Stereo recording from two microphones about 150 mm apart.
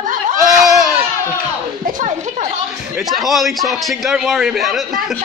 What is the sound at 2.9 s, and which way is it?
A man's voice, centre (ahead or behind).